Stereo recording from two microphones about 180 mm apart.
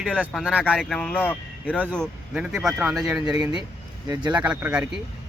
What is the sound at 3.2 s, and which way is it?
Speech, 20° right (ahead or behind).